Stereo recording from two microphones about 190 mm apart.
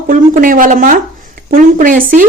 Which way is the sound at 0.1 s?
45° right (ahead or behind).